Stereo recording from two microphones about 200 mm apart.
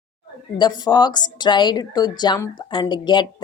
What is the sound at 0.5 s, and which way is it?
A woman's voice, 20° left (ahead or behind).